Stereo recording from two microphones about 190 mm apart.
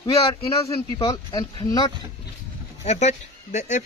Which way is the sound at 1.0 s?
20° left (ahead or behind).